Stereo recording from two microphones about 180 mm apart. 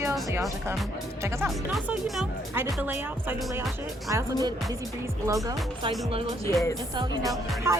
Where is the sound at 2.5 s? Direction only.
10° right (ahead or behind).